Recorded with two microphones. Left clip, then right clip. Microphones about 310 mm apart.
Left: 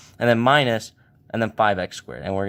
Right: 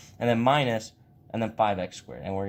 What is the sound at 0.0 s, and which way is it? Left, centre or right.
Speech, left.